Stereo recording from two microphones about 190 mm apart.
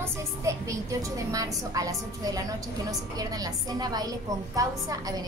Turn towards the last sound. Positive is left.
turn(degrees=-20)  # may be behind; listen again after turning